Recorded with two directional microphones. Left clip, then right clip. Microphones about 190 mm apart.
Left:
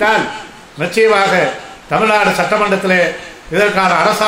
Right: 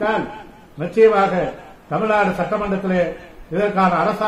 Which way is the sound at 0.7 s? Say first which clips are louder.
Left 2 dB; 10° left (ahead or behind).